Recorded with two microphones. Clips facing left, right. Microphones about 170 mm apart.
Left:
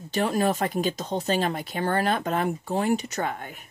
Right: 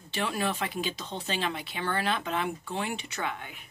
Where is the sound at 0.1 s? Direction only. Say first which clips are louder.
Left 7 dB; 40° left (ahead or behind).